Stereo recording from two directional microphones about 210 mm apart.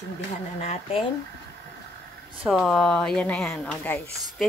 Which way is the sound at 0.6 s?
30° left (ahead or behind).